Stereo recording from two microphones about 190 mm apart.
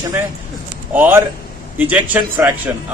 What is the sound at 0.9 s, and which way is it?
A man's voice, 10° right (ahead or behind).